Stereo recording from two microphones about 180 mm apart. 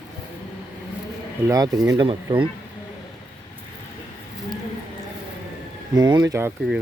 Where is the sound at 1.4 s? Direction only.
20° right (ahead or behind).